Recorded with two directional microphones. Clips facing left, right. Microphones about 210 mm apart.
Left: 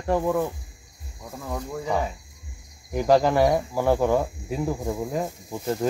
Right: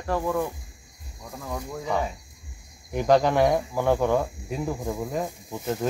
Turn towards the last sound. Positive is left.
turn(degrees=5)  # may be behind; listen again after turning